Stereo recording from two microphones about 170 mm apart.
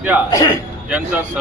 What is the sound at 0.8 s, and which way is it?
Speech, 10° right (ahead or behind).